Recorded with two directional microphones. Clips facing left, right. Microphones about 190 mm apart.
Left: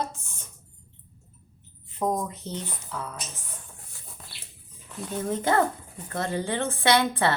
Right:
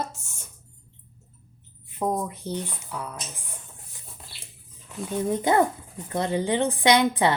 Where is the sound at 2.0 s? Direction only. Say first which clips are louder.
Even; 10° right (ahead or behind).